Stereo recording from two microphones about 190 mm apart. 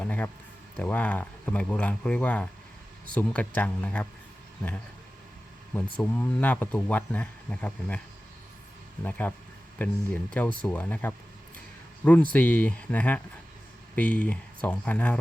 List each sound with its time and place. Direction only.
0.0 s a sound: 10° left (ahead or behind)
0.8 s speech: 10° left (ahead or behind)
6.0 s speech: 10° left (ahead or behind)
9.0 s speech: 10° left (ahead or behind)
12.3 s speech: 10° left (ahead or behind)